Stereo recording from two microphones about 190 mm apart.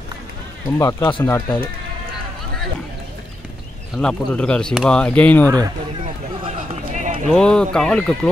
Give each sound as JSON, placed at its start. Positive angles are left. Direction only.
{"t": 0.7, "sound": "speech", "side_deg": 20}
{"t": 3.9, "sound": "speech", "side_deg": 5}
{"t": 6.0, "sound": "run", "side_deg": -35}
{"t": 7.2, "sound": "speech", "side_deg": 5}